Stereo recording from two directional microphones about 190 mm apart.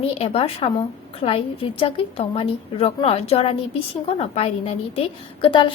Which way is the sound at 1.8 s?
30° left (ahead or behind).